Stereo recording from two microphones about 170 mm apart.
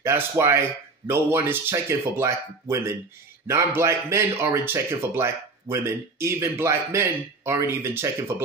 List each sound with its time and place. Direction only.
0.0 s speech: 15° right (ahead or behind)